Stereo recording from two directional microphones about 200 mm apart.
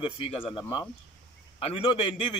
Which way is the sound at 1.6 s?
25° left (ahead or behind).